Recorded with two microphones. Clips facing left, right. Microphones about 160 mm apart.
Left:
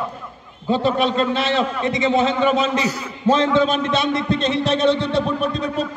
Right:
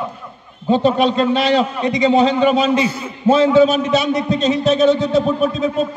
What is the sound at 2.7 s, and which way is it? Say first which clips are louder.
Speech: right 3 dB; 25° right (ahead or behind).